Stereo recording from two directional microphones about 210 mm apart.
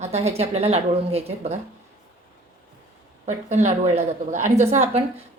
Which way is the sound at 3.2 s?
35° right (ahead or behind).